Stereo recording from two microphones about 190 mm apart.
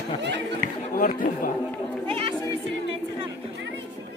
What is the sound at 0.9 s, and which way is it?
Speech, 45° left (ahead or behind).